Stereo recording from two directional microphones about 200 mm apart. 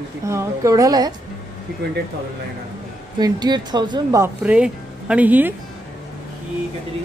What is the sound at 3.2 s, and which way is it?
Speech, 20° right (ahead or behind).